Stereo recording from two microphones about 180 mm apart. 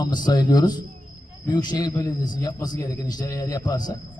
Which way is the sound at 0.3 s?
20° left (ahead or behind).